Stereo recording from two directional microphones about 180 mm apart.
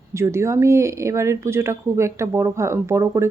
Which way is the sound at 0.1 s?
15° right (ahead or behind).